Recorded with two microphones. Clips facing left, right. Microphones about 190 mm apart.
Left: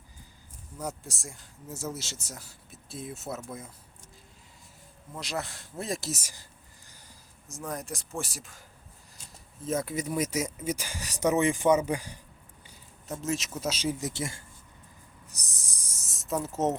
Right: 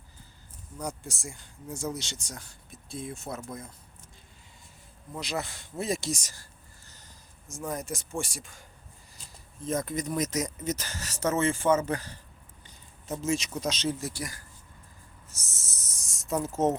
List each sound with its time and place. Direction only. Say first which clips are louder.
0.8 s speech: right 1 dB; centre (ahead or behind)
5.1 s speech: right 1 dB; centre (ahead or behind)
6.3 s whispering: even; 15° left (ahead or behind)
7.4 s speech: right 2 dB; centre (ahead or behind)
9.6 s speech: even; 5° left (ahead or behind)
12.6 s speech: right 1 dB; centre (ahead or behind)
14.1 s speech: left 3 dB; 25° left (ahead or behind)
15.3 s a sound: right 1 dB; 15° left (ahead or behind); by 16.7 s centre (ahead or behind)